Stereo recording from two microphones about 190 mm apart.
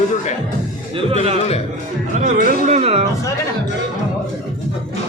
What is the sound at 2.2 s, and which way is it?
Speech, 45° right (ahead or behind).